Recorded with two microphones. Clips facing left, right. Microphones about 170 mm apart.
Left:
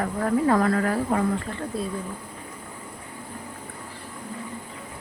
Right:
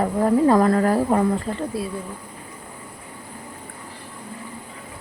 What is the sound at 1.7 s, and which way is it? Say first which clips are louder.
Speech: right 2 dB; 10° right (ahead or behind).